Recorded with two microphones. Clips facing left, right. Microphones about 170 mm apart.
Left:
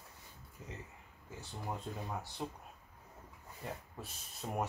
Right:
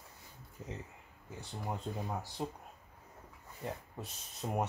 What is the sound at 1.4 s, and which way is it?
Speech, 15° right (ahead or behind).